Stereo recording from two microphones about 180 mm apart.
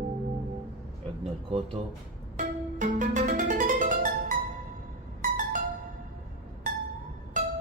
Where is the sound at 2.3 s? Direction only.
45° right (ahead or behind).